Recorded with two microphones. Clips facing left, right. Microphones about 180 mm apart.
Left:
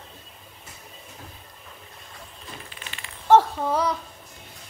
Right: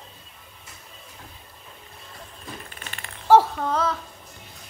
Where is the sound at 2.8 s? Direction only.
50° right (ahead or behind).